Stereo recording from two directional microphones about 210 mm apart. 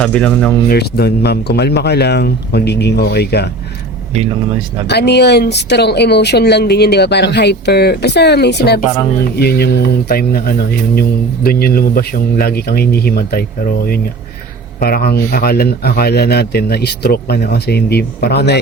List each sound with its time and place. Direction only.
0.0 s speech: 5° left (ahead or behind)
0.7 s speech: 50° left (ahead or behind)
4.9 s speech: 50° left (ahead or behind)
14.8 s speech: 45° left (ahead or behind)